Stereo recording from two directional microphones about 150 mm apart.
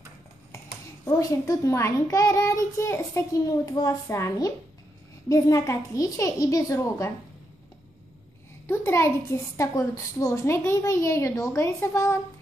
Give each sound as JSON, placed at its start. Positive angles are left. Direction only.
{"t": 1.0, "sound": "a child's voice", "side_deg": 20}
{"t": 8.6, "sound": "a child's voice", "side_deg": 15}